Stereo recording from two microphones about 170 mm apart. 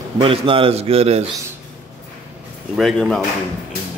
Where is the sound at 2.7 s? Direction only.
Centre (ahead or behind).